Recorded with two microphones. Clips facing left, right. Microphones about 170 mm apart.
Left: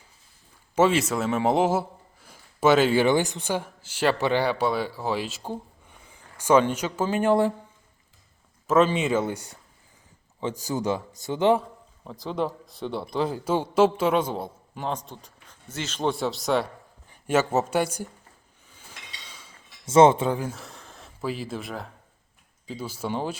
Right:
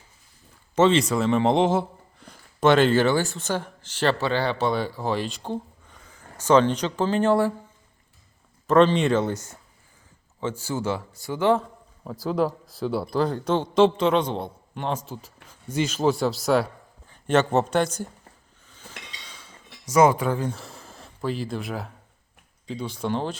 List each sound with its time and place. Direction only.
0.8 s a man's voice: 5° left (ahead or behind)
8.6 s a man's voice: 5° left (ahead or behind); by 11.6 s 20° left (ahead or behind)
12.2 s a man's voice: centre (ahead or behind)
18.7 s a sound: 10° left (ahead or behind)
19.8 s speech: 25° left (ahead or behind)
20.4 s a man's voice: centre (ahead or behind)